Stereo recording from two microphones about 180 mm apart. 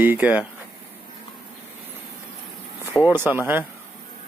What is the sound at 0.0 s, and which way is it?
Speech, 10° right (ahead or behind).